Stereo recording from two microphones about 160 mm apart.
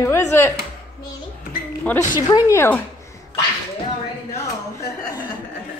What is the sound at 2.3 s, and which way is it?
Speech, 15° left (ahead or behind).